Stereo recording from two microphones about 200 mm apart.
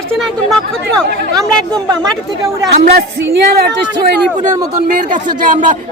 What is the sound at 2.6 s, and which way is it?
Speech, 50° right (ahead or behind).